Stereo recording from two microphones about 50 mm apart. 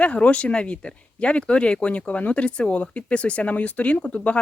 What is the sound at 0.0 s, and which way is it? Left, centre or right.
Speech, left.